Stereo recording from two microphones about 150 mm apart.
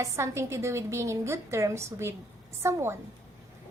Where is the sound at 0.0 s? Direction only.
20° right (ahead or behind).